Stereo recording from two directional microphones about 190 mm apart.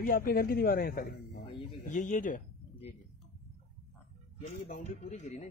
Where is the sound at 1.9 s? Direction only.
40° left (ahead or behind).